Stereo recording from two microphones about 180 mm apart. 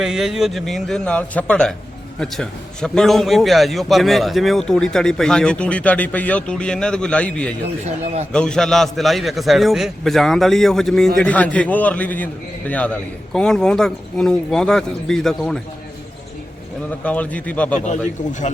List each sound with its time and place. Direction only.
0.0 s a man's voice: centre (ahead or behind)
8.0 s a man's voice: 35° right (ahead or behind)
8.3 s a man's voice: 5° left (ahead or behind)
17.0 s a man's voice: 10° left (ahead or behind)